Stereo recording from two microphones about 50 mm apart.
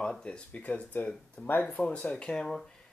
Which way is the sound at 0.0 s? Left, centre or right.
Centre.